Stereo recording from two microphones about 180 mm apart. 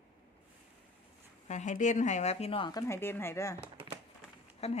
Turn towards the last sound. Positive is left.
turn(degrees=35)  # may be behind; listen again after turning